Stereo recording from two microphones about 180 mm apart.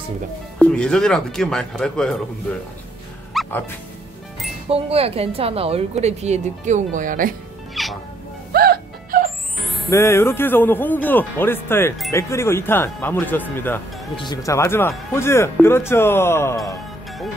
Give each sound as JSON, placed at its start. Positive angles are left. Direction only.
{"t": 0.6, "sound": "speech", "side_deg": 5}
{"t": 3.3, "sound": "music", "side_deg": 0}
{"t": 4.6, "sound": "speech", "side_deg": -35}
{"t": 7.7, "sound": "music", "side_deg": 0}
{"t": 8.5, "sound": "music", "side_deg": -55}
{"t": 9.8, "sound": "speech", "side_deg": 15}
{"t": 14.1, "sound": "speech", "side_deg": 25}